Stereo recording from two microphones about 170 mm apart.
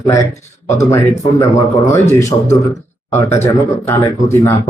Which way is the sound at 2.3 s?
25° left (ahead or behind).